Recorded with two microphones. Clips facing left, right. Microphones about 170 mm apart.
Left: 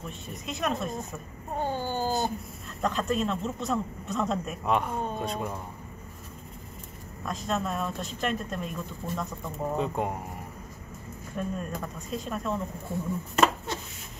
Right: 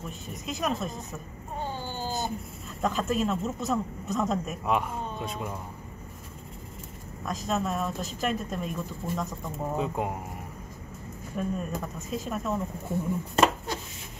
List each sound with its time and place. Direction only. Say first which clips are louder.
0.0 s speech: right 1 dB; centre (ahead or behind)
1.6 s baby cry: left 5 dB; 50° left (ahead or behind)
2.8 s speech: right 1 dB; 5° right (ahead or behind)
7.2 s speech: right 1 dB; centre (ahead or behind)
11.3 s speech: right 2 dB; 5° right (ahead or behind)